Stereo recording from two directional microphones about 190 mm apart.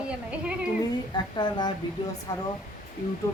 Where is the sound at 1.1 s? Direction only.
25° left (ahead or behind).